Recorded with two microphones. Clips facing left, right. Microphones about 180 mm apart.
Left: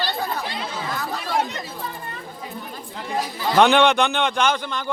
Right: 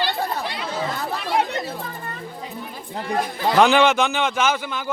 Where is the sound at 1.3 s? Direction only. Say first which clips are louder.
Right 2 dB; 60° right (ahead or behind).